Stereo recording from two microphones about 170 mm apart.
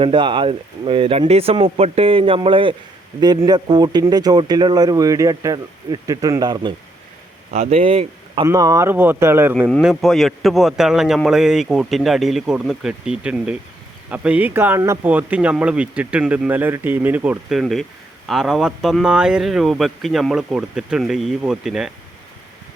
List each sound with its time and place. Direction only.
0.0 s speech: 30° right (ahead or behind)
7.5 s speech: 35° right (ahead or behind)
8.4 s speech: 20° right (ahead or behind)
9.6 s a man's voice: centre (ahead or behind)